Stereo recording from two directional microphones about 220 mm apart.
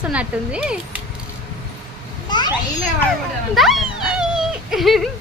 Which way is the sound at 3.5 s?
Centre (ahead or behind).